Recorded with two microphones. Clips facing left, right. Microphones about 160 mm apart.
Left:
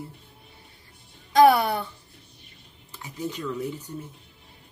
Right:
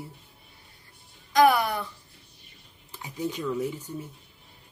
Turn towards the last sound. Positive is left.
turn(degrees=-10)  # may be behind; listen again after turning